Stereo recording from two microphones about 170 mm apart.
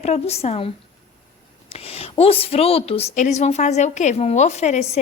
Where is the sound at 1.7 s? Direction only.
35° left (ahead or behind).